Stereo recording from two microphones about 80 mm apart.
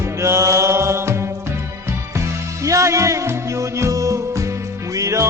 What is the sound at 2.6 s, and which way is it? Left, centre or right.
Music, right.